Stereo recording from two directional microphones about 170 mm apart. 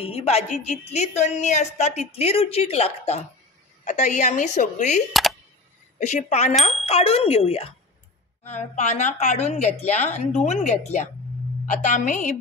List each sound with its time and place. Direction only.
0.0 s a woman's voice: 35° left (ahead or behind)
5.1 s a sound: centre (ahead or behind)
5.9 s a woman's voice: 45° left (ahead or behind)